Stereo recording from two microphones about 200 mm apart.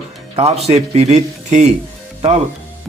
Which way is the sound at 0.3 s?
30° right (ahead or behind).